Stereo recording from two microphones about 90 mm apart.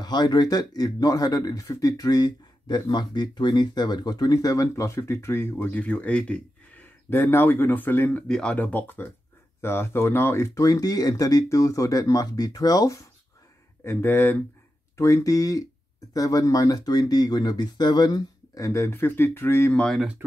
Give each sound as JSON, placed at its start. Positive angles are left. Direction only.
{"t": 0.0, "sound": "speech", "side_deg": 50}
{"t": 8.3, "sound": "speech", "side_deg": 10}
{"t": 13.8, "sound": "speech", "side_deg": 25}
{"t": 15.0, "sound": "speech", "side_deg": 35}
{"t": 18.9, "sound": "speech", "side_deg": 25}
{"t": 20.2, "sound": "speech", "side_deg": -25}